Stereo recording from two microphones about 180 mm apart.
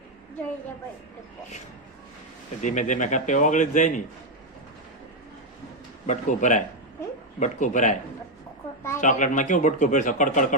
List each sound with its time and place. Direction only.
2.6 s speech: 45° left (ahead or behind)
6.1 s speech: 45° left (ahead or behind)
9.0 s speech: 45° left (ahead or behind)